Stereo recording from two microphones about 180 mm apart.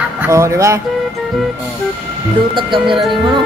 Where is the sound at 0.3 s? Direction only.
15° right (ahead or behind).